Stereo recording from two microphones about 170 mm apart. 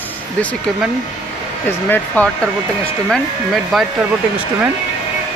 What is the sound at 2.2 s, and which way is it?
Speech, 10° left (ahead or behind).